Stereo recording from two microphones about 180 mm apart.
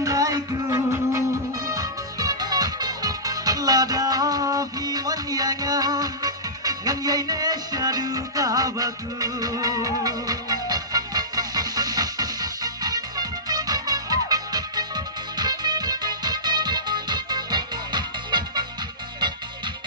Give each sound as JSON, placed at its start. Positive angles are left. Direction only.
{"t": 0.0, "sound": "music", "side_deg": -20}